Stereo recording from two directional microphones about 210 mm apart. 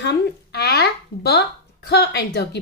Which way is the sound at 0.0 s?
50° left (ahead or behind).